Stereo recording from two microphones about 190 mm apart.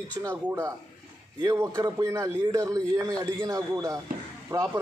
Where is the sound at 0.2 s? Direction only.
15° right (ahead or behind).